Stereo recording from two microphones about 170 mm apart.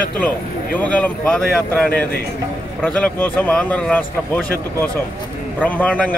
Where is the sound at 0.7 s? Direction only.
10° left (ahead or behind).